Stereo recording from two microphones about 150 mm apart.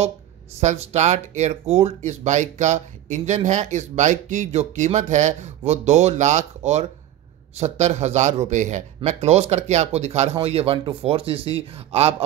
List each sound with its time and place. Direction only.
0.6 s speech: 50° right (ahead or behind)